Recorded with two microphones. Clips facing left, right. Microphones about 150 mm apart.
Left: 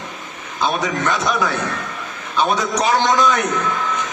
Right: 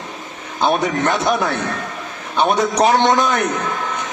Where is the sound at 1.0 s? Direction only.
25° right (ahead or behind).